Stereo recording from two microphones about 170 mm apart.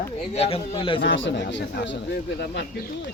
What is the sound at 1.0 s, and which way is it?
A man's voice, 90° left.